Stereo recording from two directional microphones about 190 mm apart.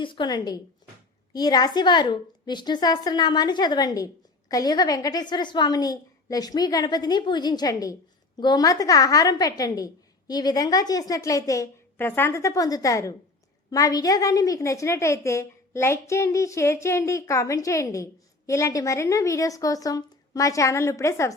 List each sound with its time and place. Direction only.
0.0 s a woman's voice: 25° left (ahead or behind)